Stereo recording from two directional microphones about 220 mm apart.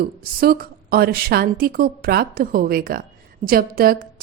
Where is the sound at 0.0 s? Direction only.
45° right (ahead or behind).